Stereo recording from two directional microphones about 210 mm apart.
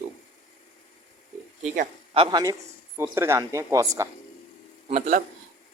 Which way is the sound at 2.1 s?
20° right (ahead or behind).